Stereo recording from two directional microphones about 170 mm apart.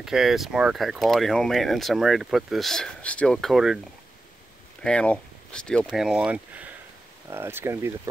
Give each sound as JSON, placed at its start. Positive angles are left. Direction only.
{"t": 0.0, "sound": "speech", "side_deg": 0}
{"t": 4.8, "sound": "speech", "side_deg": 5}